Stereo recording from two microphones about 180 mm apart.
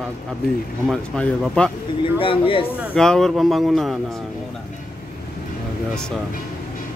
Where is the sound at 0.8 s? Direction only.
Centre (ahead or behind).